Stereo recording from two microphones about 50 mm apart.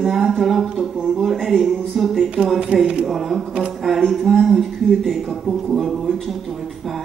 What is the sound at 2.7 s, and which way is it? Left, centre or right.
Speech, right.